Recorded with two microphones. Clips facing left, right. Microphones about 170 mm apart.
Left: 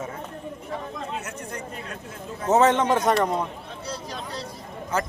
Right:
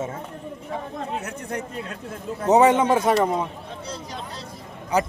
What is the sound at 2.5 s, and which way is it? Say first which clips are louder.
Speech: right 3 dB; 10° right (ahead or behind).